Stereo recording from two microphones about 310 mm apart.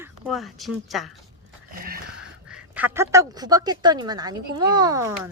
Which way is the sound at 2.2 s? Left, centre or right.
Centre.